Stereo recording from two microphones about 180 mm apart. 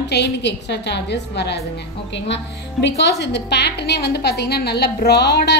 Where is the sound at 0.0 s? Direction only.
70° left (ahead or behind).